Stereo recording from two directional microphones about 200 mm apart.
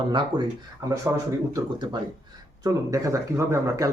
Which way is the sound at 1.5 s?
20° right (ahead or behind).